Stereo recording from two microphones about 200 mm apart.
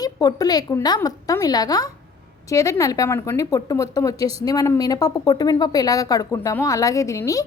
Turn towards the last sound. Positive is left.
turn(degrees=15)  # may be behind; listen again after turning